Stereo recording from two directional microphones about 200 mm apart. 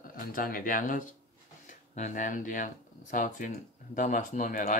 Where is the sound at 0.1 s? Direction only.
45° left (ahead or behind).